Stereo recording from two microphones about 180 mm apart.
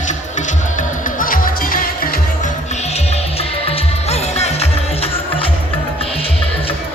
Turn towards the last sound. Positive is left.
turn(degrees=35)  # may be behind; listen again after turning